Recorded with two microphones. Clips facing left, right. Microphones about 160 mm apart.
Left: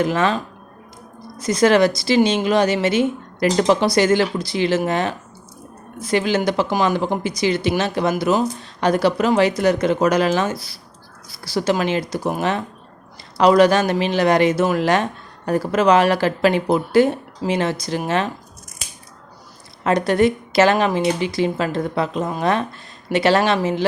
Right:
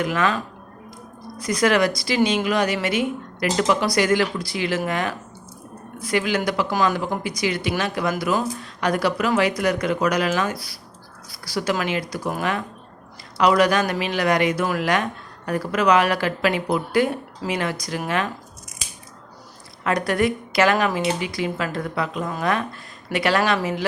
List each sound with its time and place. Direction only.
0.0 s speech: 30° left (ahead or behind)
1.4 s speech: 25° left (ahead or behind)
19.8 s speech: 25° left (ahead or behind)